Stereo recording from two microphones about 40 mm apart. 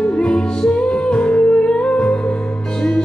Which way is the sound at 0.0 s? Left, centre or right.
Left.